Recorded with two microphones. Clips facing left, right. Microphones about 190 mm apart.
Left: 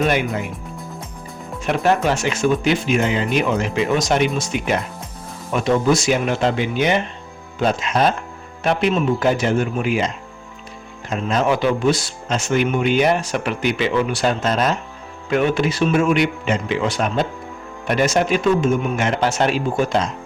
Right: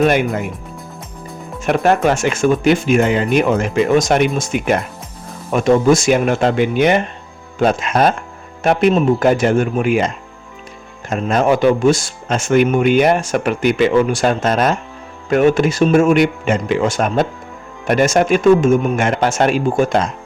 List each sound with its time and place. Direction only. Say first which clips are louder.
0.0 s speech: right 5 dB; 50° right (ahead or behind)
1.6 s speech: right 4 dB; 50° right (ahead or behind)
11.1 s speech: right 4 dB; 50° right (ahead or behind)